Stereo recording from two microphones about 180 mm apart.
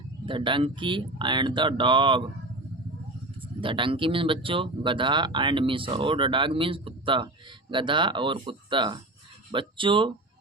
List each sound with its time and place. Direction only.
0.3 s speech: 30° right (ahead or behind)
3.6 s speech: 30° right (ahead or behind)